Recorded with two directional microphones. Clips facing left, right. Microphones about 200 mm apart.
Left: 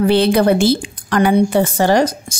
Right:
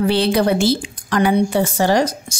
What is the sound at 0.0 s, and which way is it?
A woman's voice, 55° left (ahead or behind).